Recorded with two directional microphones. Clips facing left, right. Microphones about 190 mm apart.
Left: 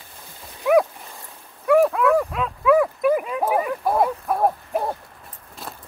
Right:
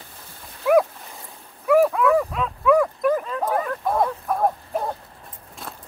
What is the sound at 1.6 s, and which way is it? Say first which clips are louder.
Dog: even; centre (ahead or behind).